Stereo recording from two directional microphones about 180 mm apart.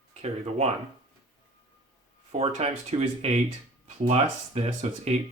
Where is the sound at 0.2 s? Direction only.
35° right (ahead or behind).